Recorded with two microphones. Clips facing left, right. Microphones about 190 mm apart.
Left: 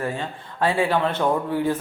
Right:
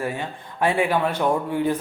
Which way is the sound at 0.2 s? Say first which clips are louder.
Even; 15° right (ahead or behind).